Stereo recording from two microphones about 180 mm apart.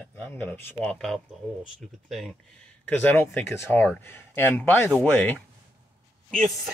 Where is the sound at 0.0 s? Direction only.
10° left (ahead or behind).